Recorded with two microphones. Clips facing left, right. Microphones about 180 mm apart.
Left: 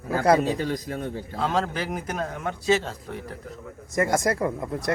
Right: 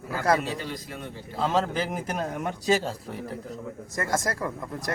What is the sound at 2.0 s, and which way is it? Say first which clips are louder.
Speech: even; 35° right (ahead or behind).